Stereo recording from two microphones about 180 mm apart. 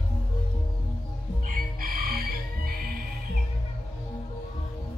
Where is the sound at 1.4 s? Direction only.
55° right (ahead or behind).